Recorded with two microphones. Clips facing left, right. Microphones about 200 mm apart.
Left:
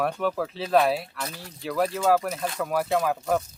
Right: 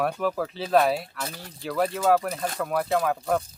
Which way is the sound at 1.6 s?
Centre (ahead or behind).